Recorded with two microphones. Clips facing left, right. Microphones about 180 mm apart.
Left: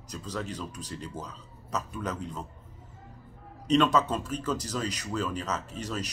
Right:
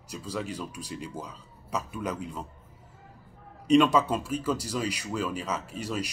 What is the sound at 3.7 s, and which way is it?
A man's voice, 10° right (ahead or behind).